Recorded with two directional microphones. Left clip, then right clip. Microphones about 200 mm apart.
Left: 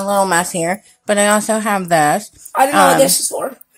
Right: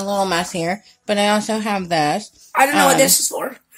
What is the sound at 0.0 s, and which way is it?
A woman's voice, 10° left (ahead or behind).